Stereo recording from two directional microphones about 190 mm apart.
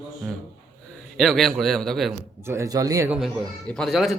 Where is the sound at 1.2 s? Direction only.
Centre (ahead or behind).